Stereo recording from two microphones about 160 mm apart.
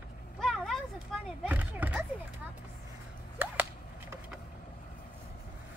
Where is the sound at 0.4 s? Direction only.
5° left (ahead or behind).